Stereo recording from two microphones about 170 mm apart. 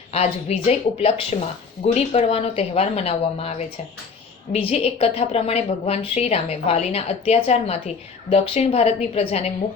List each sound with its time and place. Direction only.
0.1 s a woman's voice: 35° left (ahead or behind)